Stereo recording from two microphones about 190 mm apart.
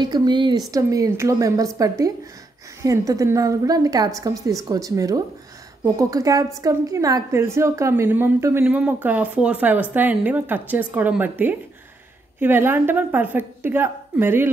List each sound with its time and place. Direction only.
0.0 s a woman's voice: 20° right (ahead or behind)